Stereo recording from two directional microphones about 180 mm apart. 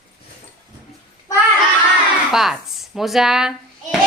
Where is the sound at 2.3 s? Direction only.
Centre (ahead or behind).